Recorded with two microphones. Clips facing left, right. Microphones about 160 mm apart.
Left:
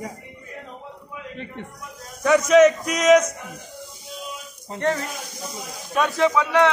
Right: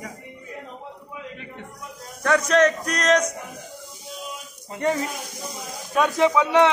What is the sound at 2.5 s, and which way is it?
Speech, 5° left (ahead or behind).